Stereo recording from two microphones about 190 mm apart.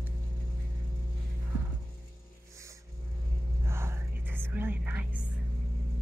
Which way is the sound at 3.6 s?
15° right (ahead or behind).